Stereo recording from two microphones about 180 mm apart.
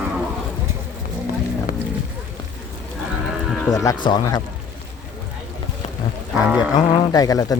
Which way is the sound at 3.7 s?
20° left (ahead or behind).